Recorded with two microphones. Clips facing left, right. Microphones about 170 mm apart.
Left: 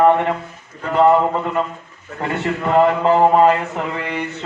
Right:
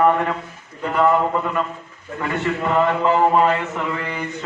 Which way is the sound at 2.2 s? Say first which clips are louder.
Left 1 dB; 35° left (ahead or behind).